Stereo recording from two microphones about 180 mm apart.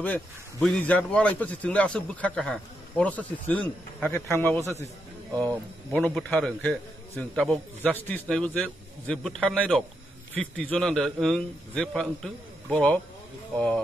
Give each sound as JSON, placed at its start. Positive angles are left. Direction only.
{"t": 0.0, "sound": "a man's voice", "side_deg": 5}